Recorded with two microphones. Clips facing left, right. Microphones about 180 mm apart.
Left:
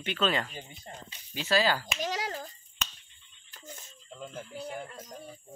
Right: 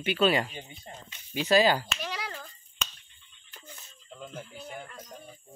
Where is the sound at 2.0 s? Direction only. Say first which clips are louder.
Left 4 dB; 40° left (ahead or behind).